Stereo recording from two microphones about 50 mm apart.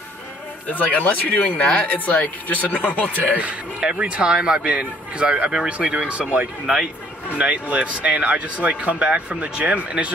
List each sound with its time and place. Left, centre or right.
0.7 s speech: left
1.4 s speech: centre
1.9 s speech: left
3.3 s speech: right
6.6 s speech: centre
7.2 s speech: right